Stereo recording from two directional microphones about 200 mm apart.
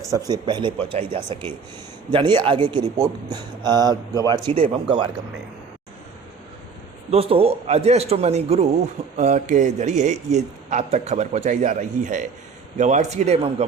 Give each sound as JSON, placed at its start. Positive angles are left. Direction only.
{"t": 0.1, "sound": "speech", "side_deg": -20}
{"t": 7.1, "sound": "a man's voice", "side_deg": -30}